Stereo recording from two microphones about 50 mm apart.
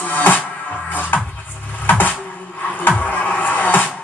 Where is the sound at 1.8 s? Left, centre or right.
Left.